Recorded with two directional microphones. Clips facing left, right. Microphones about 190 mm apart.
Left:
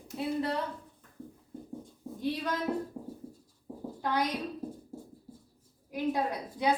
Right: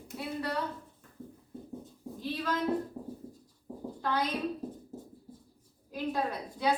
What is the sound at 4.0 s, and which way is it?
Speech, 20° left (ahead or behind).